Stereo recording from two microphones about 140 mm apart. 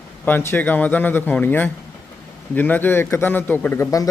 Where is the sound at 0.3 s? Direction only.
15° left (ahead or behind).